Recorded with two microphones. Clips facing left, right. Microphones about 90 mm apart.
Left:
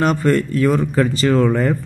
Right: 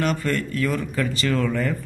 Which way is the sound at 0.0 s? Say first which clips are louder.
Left 7 dB; 35° left (ahead or behind).